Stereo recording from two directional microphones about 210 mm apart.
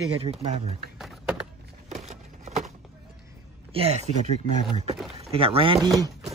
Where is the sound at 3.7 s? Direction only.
30° right (ahead or behind).